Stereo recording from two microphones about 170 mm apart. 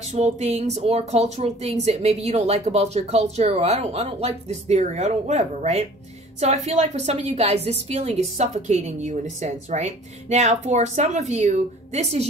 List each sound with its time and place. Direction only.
0.0 s a woman's voice: 40° right (ahead or behind)